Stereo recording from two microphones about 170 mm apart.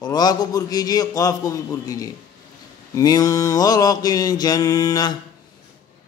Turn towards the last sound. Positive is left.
turn(degrees=20)  # may be behind; listen again after turning